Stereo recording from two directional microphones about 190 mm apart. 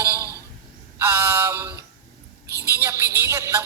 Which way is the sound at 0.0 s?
15° right (ahead or behind).